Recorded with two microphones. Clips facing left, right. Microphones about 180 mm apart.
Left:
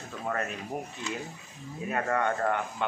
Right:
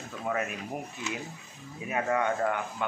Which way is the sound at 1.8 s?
5° right (ahead or behind).